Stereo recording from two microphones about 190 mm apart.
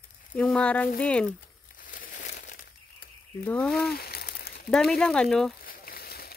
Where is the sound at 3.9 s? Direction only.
55° left (ahead or behind).